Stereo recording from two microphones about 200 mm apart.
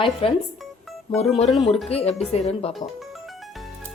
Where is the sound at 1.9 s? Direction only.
30° left (ahead or behind).